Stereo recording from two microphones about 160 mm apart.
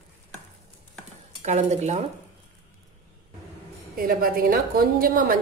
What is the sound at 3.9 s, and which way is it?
A woman's voice, 65° right (ahead or behind).